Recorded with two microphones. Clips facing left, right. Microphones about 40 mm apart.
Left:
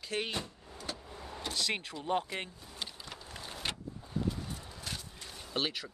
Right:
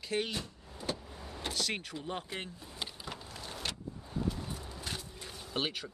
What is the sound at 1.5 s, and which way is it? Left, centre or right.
Speech, left.